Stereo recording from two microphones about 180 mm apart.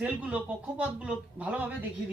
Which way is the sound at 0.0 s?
5° right (ahead or behind).